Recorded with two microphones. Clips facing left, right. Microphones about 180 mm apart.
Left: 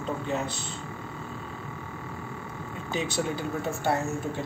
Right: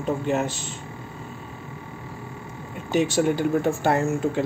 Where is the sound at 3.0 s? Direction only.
75° right (ahead or behind); by 4.0 s 90° right.